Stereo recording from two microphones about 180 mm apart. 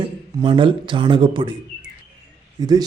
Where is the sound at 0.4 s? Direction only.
30° right (ahead or behind).